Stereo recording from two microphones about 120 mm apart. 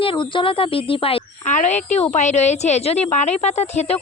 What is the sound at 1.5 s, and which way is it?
A woman's voice, 85° left.